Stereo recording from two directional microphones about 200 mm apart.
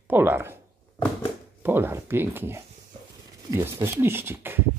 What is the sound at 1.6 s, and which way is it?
Speech, 10° right (ahead or behind).